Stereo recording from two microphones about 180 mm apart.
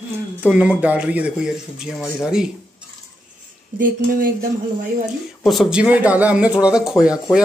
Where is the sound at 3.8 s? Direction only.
50° right (ahead or behind).